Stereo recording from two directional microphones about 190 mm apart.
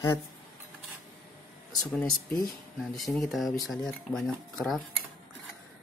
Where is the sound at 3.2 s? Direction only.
Centre (ahead or behind).